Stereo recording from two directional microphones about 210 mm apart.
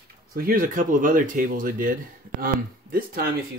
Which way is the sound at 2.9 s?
45° right (ahead or behind).